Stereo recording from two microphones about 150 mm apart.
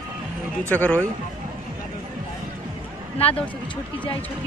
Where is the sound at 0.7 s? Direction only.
10° left (ahead or behind).